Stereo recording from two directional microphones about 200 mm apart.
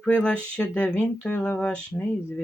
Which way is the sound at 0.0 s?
5° left (ahead or behind).